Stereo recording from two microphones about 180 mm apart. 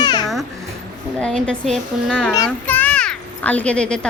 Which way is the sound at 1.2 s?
5° left (ahead or behind).